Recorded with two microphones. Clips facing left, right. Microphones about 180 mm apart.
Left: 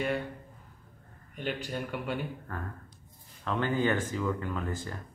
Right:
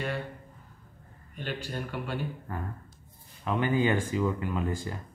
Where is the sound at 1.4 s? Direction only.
15° left (ahead or behind).